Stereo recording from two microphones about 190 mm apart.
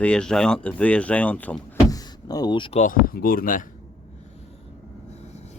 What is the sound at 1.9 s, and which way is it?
Door, 20° left (ahead or behind).